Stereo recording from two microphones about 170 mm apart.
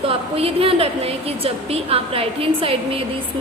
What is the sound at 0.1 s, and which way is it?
A woman's voice, 35° right (ahead or behind).